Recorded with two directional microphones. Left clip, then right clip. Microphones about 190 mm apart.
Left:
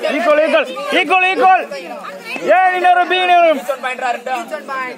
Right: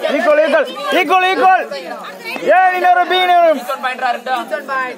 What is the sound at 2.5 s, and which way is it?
A man's voice, 40° right (ahead or behind).